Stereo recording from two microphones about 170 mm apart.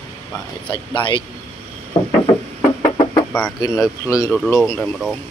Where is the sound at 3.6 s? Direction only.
20° left (ahead or behind).